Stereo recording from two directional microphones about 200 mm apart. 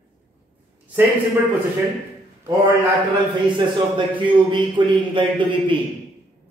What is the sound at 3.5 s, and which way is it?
A man's voice, 25° right (ahead or behind).